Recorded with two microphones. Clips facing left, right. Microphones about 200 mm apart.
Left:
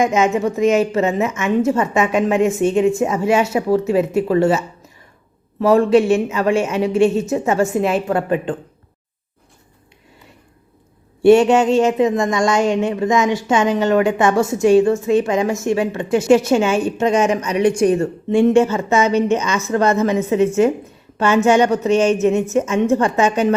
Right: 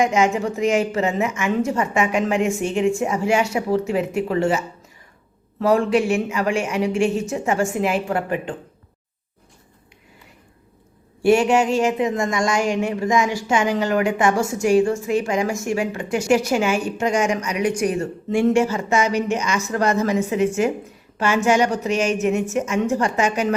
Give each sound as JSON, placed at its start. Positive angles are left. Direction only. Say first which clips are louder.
{"t": 0.1, "sound": "speech", "louder": "left 3 dB", "side_deg": 20}
{"t": 5.6, "sound": "speech", "louder": "left 5 dB", "side_deg": 25}
{"t": 11.2, "sound": "speech", "louder": "left 5 dB", "side_deg": 25}
{"t": 21.2, "sound": "speech", "louder": "left 4 dB", "side_deg": 25}